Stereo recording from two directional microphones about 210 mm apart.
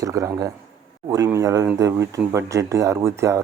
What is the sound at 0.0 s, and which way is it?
Speech, 15° right (ahead or behind).